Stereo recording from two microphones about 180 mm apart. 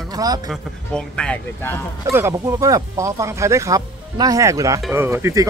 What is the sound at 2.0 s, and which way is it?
Speech, 15° right (ahead or behind).